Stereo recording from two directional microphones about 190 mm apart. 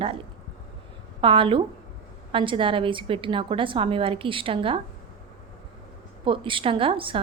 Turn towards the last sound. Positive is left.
turn(degrees=-30)  # may be behind; listen again after turning